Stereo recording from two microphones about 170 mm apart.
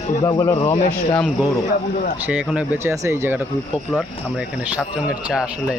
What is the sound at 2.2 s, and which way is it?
Speech, 5° right (ahead or behind).